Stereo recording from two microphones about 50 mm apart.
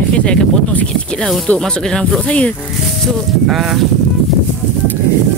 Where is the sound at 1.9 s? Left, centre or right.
Centre.